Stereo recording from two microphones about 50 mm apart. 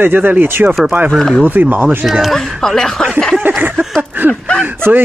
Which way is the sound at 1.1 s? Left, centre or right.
Centre.